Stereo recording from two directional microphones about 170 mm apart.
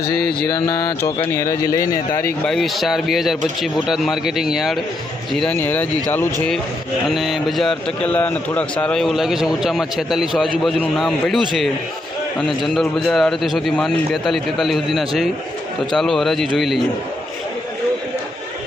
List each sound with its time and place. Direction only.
0.0 s mantra: 70° left (ahead or behind)
0.5 s speech: 25° left (ahead or behind)
2.5 s a man's voice: centre (ahead or behind)
7.1 s a man's voice: centre (ahead or behind)